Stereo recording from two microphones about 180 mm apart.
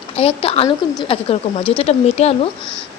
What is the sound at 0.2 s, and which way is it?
A woman's voice, 30° left (ahead or behind).